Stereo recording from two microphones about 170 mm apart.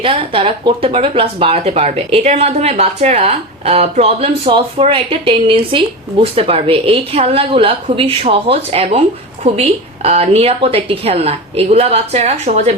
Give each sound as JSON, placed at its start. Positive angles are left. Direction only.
{"t": 0.0, "sound": "a woman's voice", "side_deg": -30}